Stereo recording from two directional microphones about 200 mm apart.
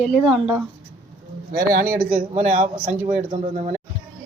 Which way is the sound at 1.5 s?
45° right (ahead or behind).